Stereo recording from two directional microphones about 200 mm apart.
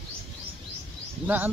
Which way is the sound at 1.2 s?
10° right (ahead or behind).